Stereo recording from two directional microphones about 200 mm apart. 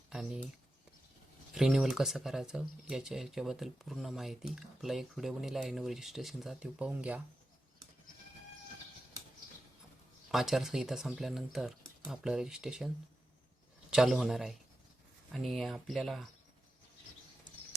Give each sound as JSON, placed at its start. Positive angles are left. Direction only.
{"t": 0.1, "sound": "a sound", "side_deg": -5}
{"t": 1.5, "sound": "speech", "side_deg": 0}
{"t": 10.3, "sound": "speech", "side_deg": 0}
{"t": 13.9, "sound": "speech", "side_deg": 0}